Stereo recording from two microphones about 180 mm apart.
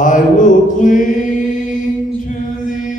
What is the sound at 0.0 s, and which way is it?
Mantra, 45° left (ahead or behind).